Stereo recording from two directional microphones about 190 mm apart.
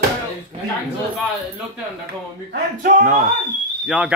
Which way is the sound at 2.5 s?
50° right (ahead or behind).